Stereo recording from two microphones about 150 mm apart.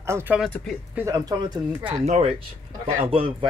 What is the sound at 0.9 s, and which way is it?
Speech, 20° right (ahead or behind).